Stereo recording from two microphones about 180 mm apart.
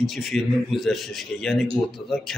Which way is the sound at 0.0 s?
Centre (ahead or behind).